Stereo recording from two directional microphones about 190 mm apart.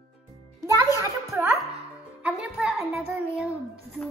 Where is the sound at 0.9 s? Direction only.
15° right (ahead or behind).